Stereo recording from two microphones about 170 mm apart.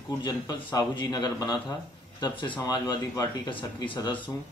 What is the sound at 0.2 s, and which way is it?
Speech, 25° left (ahead or behind).